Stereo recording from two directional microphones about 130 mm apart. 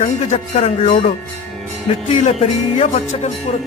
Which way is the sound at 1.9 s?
50° left (ahead or behind).